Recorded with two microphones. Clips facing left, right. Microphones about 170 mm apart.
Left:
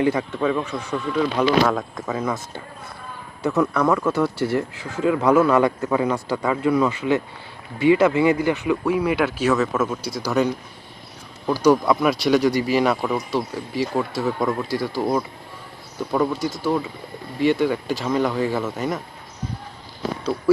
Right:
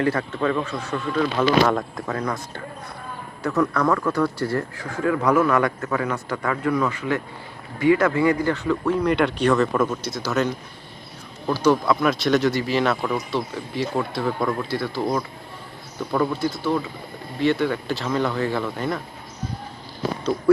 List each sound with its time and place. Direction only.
0.0 s speech: 15° left (ahead or behind)
1.6 s speech: centre (ahead or behind)
3.8 s speech: 5° left (ahead or behind)
4.4 s speech: 25° left (ahead or behind); by 18.9 s 5° left (ahead or behind)